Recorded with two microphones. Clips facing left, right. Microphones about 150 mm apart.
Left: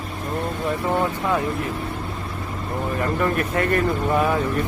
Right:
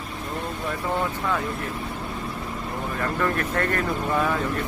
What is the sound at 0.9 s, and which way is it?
Speech, 20° left (ahead or behind).